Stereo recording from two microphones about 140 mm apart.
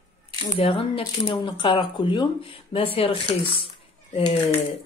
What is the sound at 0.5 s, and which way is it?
Speech, 40° left (ahead or behind).